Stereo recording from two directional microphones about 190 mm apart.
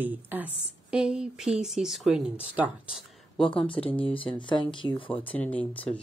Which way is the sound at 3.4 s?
25° left (ahead or behind).